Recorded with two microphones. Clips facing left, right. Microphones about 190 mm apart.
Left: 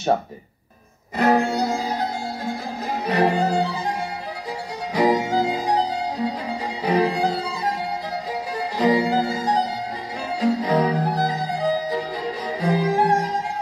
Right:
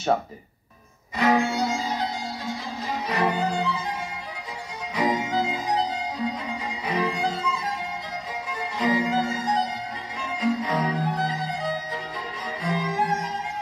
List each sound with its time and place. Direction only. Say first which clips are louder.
1.1 s music: left 3 dB; 40° left (ahead or behind)
3.1 s violin: left 6 dB; 35° left (ahead or behind)
4.9 s music: left 5 dB; 35° left (ahead or behind)